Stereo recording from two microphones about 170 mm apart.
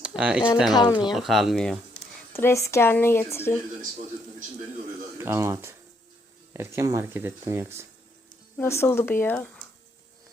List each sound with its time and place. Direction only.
0.0 s speech: 5° right (ahead or behind)
0.7 s speech: 25° left (ahead or behind)
1.1 s speech: centre (ahead or behind)
2.3 s speech: 15° left (ahead or behind)
5.1 s speech: 15° right (ahead or behind)
8.6 s speech: 15° left (ahead or behind)